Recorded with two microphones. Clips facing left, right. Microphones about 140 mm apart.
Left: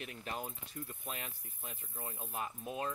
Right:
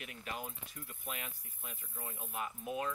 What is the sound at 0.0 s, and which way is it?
Speech, 35° left (ahead or behind).